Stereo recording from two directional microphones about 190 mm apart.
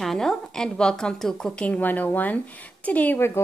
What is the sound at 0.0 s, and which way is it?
A woman's voice, centre (ahead or behind).